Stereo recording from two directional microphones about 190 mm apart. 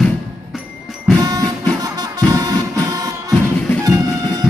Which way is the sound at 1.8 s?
20° right (ahead or behind).